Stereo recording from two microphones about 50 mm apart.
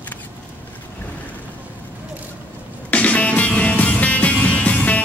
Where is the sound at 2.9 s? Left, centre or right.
Left.